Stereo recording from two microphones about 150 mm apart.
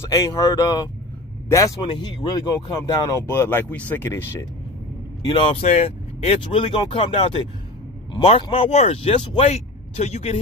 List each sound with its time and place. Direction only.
0.0 s speech: 20° left (ahead or behind)
5.3 s speech: 35° left (ahead or behind)
9.5 s speech: 45° left (ahead or behind)